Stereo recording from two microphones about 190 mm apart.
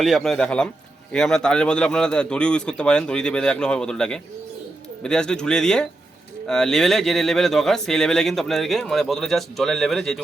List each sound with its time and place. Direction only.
0.0 s speech: centre (ahead or behind)